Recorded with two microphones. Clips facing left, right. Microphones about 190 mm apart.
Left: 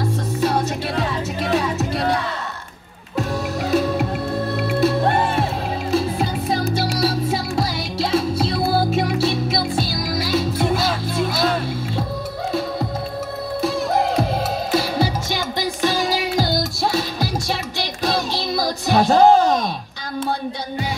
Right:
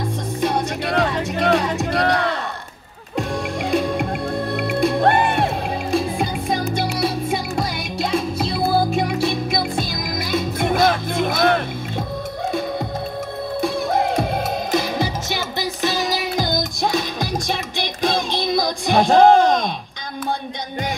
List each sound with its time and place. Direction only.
0.0 s music: 5° left (ahead or behind)
0.8 s music: 70° right (ahead or behind)
3.6 s music: 5° left (ahead or behind)
4.6 s music: 65° right (ahead or behind)
8.7 s music: 20° right (ahead or behind)
10.2 s music: 50° right (ahead or behind)
14.7 s music: 10° left (ahead or behind)